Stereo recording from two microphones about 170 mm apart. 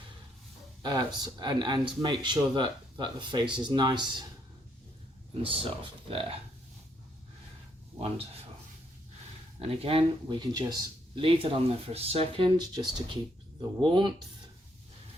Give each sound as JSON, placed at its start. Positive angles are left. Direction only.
{"t": 0.8, "sound": "speech", "side_deg": -25}
{"t": 5.4, "sound": "speech", "side_deg": -35}
{"t": 9.6, "sound": "speech", "side_deg": -35}